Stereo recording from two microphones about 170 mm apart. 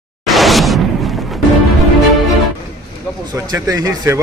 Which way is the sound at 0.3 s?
Centre (ahead or behind).